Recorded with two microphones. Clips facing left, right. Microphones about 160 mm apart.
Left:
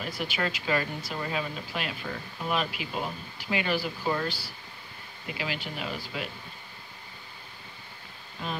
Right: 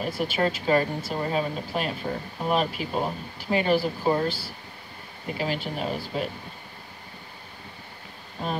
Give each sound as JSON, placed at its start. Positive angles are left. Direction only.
{"t": 0.2, "sound": "speech", "side_deg": -40}
{"t": 5.2, "sound": "speech", "side_deg": -40}
{"t": 8.4, "sound": "speech", "side_deg": -40}